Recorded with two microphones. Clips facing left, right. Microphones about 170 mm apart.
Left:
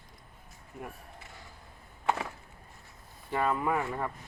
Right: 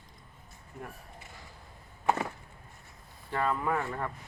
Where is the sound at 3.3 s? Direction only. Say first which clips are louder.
Left 1 dB; 10° left (ahead or behind).